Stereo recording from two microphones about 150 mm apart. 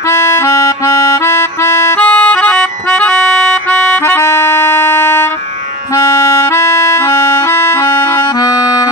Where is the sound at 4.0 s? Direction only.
15° left (ahead or behind).